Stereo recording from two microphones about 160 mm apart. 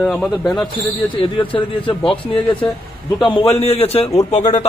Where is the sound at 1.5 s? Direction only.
35° left (ahead or behind).